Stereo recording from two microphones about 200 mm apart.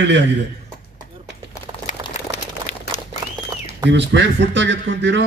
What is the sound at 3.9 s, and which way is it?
A man's voice, 60° right (ahead or behind).